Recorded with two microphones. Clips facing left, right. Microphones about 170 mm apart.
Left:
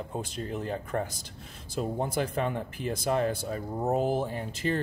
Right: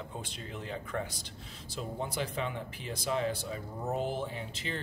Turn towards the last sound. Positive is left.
turn(degrees=50)  # may be behind; listen again after turning